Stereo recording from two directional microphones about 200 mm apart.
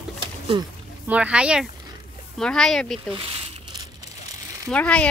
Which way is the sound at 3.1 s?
25° right (ahead or behind).